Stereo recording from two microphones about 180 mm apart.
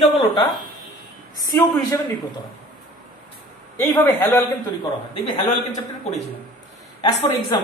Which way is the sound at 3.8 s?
15° left (ahead or behind).